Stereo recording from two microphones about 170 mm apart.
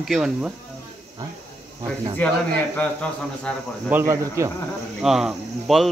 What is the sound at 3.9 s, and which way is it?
Speech, 15° right (ahead or behind).